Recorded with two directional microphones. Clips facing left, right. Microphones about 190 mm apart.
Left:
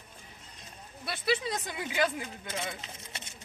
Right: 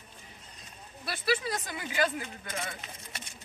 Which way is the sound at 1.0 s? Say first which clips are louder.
Even; 25° left (ahead or behind).